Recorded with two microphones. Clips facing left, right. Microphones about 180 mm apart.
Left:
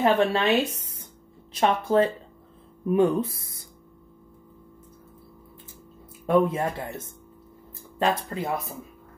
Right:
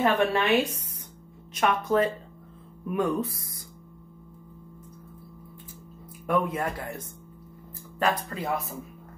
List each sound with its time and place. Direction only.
0.0 s a woman's voice: 25° left (ahead or behind)
2.8 s music: 30° left (ahead or behind)
3.3 s speech: 25° left (ahead or behind)
6.2 s a woman's voice: 25° left (ahead or behind)